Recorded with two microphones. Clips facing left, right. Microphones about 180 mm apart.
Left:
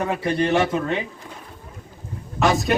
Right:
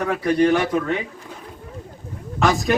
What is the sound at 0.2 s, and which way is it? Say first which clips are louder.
Speech: right 4 dB; 25° left (ahead or behind).